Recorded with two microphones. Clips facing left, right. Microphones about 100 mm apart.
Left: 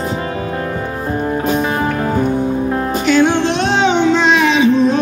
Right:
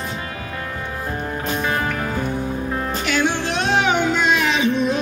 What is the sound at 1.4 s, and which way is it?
Music, 20° left (ahead or behind).